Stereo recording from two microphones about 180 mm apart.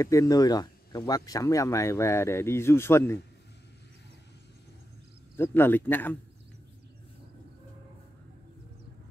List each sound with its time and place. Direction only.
0.0 s speech: 20° left (ahead or behind)
5.3 s speech: 10° left (ahead or behind)